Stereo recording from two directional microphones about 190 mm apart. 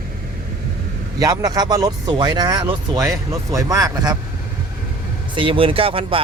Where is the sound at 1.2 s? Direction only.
15° right (ahead or behind).